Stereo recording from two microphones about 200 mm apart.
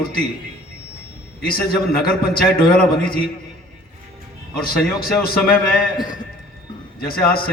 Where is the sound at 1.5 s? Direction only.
50° left (ahead or behind).